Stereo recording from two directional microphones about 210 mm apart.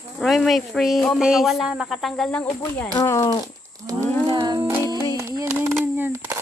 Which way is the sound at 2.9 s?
15° left (ahead or behind).